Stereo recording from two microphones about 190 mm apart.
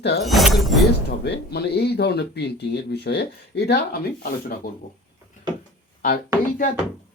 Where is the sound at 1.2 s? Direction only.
60° left (ahead or behind).